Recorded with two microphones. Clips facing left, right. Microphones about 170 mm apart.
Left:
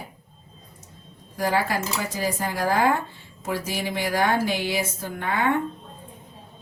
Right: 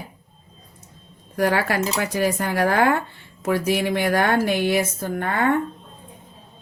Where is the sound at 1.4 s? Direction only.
65° right (ahead or behind); by 5.3 s 50° right (ahead or behind).